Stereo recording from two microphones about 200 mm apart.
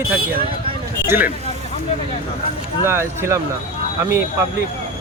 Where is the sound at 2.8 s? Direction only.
10° right (ahead or behind).